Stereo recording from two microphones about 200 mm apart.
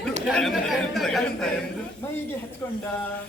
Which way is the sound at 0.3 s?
Centre (ahead or behind).